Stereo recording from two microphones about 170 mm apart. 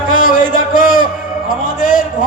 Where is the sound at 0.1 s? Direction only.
50° left (ahead or behind).